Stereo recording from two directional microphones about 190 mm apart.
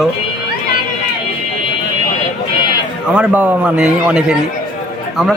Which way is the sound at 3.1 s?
5° right (ahead or behind).